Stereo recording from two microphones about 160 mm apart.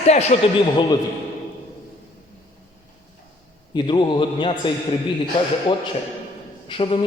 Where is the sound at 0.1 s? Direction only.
45° left (ahead or behind).